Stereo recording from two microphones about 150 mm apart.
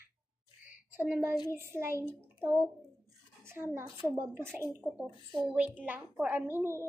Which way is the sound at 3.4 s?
15° right (ahead or behind).